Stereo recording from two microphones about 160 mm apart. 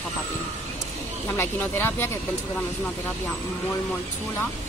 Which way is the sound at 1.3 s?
15° left (ahead or behind).